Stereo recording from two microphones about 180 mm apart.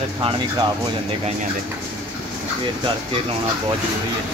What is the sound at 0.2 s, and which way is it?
Speech, 30° right (ahead or behind).